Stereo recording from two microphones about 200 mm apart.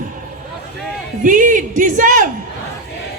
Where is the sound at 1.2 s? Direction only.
40° right (ahead or behind).